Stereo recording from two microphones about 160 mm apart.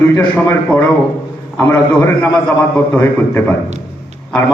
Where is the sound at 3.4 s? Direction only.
10° left (ahead or behind).